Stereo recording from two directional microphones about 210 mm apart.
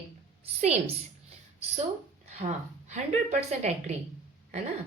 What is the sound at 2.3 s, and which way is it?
A woman's voice, 35° right (ahead or behind).